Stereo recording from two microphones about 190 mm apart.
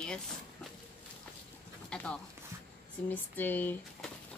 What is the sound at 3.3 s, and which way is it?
Speech, 10° left (ahead or behind).